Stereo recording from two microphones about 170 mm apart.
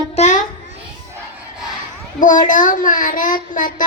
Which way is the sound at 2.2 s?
50° left (ahead or behind).